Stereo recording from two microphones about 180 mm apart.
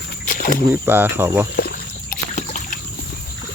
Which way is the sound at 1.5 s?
55° left (ahead or behind).